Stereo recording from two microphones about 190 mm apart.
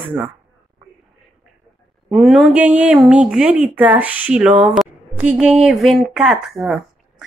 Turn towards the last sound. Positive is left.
turn(degrees=-5)  # may be behind; listen again after turning